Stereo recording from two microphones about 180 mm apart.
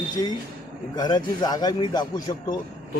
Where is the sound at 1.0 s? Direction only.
25° left (ahead or behind).